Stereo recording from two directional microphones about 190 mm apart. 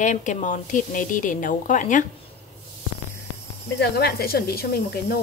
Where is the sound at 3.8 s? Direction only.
60° left (ahead or behind).